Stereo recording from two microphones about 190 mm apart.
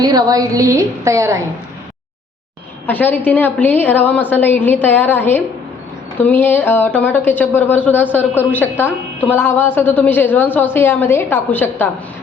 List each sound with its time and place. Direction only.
0.0 s a woman's voice: 20° right (ahead or behind)
2.8 s a woman's voice: 10° left (ahead or behind)